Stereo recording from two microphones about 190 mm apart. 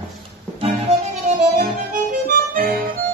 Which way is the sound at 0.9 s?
35° right (ahead or behind).